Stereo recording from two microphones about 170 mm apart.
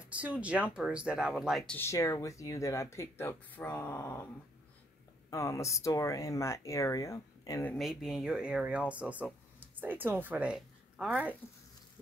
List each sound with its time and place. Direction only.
0.0 s speech: 10° right (ahead or behind)
1.7 s speech: 15° left (ahead or behind)
5.3 s speech: 20° left (ahead or behind)
7.7 s speech: centre (ahead or behind)